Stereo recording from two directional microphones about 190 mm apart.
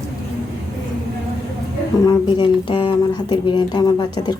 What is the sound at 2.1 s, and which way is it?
Speech, 25° left (ahead or behind).